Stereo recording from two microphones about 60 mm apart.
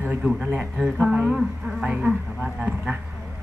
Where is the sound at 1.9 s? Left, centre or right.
Right.